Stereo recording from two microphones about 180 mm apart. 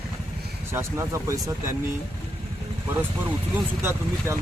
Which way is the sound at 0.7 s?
15° right (ahead or behind).